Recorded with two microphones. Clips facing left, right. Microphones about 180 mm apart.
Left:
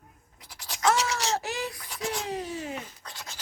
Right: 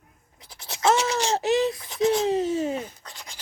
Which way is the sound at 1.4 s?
20° right (ahead or behind).